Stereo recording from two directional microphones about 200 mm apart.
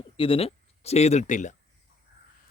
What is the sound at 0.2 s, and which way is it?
Speech, 30° left (ahead or behind).